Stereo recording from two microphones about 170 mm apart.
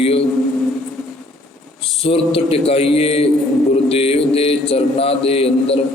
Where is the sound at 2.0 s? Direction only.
35° left (ahead or behind).